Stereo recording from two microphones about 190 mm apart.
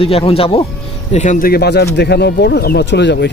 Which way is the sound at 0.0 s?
30° left (ahead or behind).